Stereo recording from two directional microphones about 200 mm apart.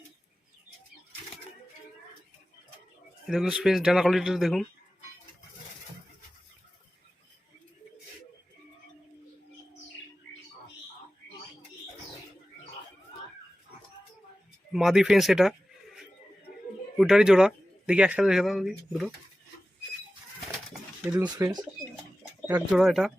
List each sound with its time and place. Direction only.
3.2 s speech: 5° right (ahead or behind)
14.7 s speech: centre (ahead or behind)
17.0 s speech: 5° right (ahead or behind)
21.0 s speech: 15° right (ahead or behind)
22.7 s speech: centre (ahead or behind)